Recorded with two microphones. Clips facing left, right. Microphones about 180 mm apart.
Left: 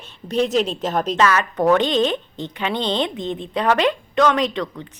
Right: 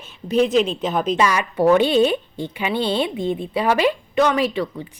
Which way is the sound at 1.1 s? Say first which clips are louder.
Left 1 dB; 10° right (ahead or behind).